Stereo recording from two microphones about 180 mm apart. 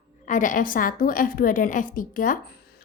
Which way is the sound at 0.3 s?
45° left (ahead or behind).